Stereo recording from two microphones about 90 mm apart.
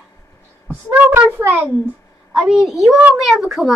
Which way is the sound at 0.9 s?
20° right (ahead or behind).